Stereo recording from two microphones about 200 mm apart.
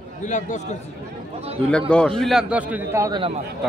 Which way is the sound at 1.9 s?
5° left (ahead or behind).